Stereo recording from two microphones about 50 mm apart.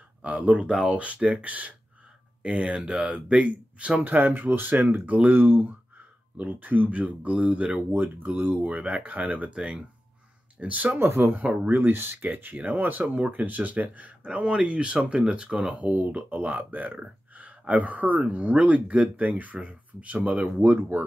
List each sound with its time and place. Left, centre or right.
0.2 s speech: right
0.9 s speech: right
4.0 s speech: right
4.8 s speech: right
5.3 s speech: right
5.9 s speech: right
8.8 s speech: right
9.1 s speech: right
9.6 s speech: centre
10.6 s speech: right
11.0 s speech: right
11.4 s speech: right
11.7 s speech: right; by 15.7 s centre
15.7 s speech: right